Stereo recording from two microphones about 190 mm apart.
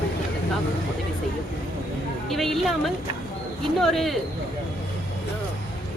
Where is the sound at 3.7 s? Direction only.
Centre (ahead or behind).